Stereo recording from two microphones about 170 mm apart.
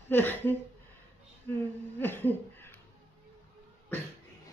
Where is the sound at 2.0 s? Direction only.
10° left (ahead or behind).